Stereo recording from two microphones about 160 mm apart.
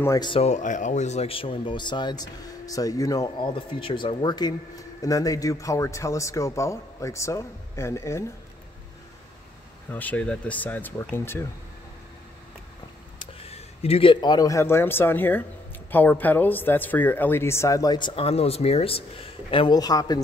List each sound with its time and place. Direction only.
0.0 s speech: 20° left (ahead or behind)
0.3 s speech: 45° left (ahead or behind); by 8.3 s 15° left (ahead or behind)
9.8 s speech: 10° left (ahead or behind)
13.2 s speech: 35° left (ahead or behind)